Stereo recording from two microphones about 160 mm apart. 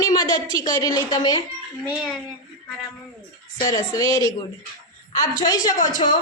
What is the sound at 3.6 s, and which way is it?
Speech, 20° left (ahead or behind).